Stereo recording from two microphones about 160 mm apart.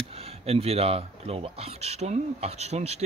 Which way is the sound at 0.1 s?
40° right (ahead or behind).